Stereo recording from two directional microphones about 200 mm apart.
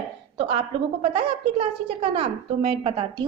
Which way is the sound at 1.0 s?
30° right (ahead or behind).